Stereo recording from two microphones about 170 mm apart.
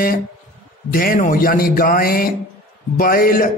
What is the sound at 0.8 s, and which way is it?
A man's voice, 55° left (ahead or behind).